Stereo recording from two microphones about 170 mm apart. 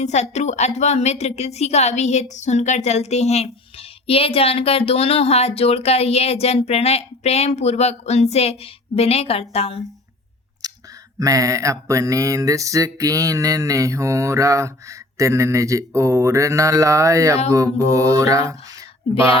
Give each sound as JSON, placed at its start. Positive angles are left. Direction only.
{"t": 0.0, "sound": "speech", "side_deg": 40}
{"t": 10.6, "sound": "clicking", "side_deg": -25}
{"t": 11.2, "sound": "mantra", "side_deg": -20}